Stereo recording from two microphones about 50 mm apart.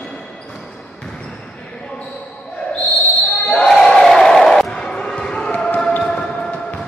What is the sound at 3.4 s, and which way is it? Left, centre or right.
Basketball bounce, centre.